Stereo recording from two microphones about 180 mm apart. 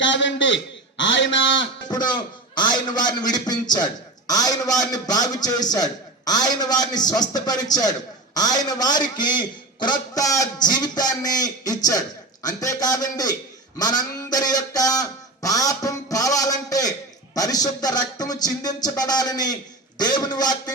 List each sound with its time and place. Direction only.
0.0 s a man's voice: 90° left
1.9 s a man's voice: 25° left (ahead or behind)